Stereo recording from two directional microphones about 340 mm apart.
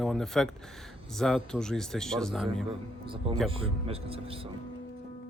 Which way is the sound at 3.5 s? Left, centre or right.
Centre.